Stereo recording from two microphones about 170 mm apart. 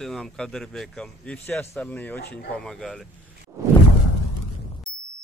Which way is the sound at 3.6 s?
20° right (ahead or behind).